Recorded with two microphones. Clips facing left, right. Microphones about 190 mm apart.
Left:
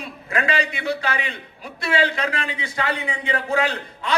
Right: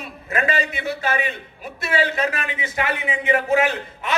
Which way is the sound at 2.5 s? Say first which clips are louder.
Right 1 dB; 20° right (ahead or behind).